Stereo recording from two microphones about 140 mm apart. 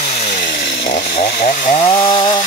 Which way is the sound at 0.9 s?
90° left.